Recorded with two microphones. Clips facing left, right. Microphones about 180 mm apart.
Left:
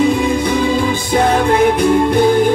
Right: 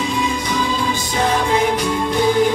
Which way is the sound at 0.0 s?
55° left (ahead or behind).